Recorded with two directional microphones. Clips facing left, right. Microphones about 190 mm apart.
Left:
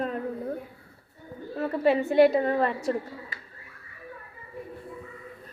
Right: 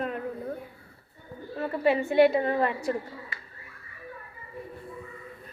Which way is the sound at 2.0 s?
40° left (ahead or behind).